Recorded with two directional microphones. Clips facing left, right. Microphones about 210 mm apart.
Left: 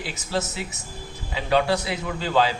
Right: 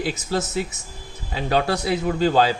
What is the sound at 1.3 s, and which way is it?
A man's voice, 45° right (ahead or behind).